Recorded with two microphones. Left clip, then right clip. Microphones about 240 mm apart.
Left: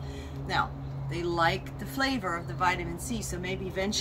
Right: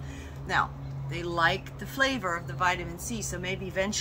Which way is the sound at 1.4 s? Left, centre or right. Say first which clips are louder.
Right 2 dB; centre.